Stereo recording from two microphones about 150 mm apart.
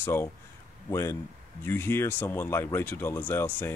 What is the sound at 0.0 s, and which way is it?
A man's voice, 15° left (ahead or behind).